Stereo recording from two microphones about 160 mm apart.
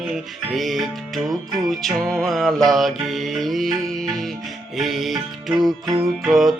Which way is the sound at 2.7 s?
Centre (ahead or behind).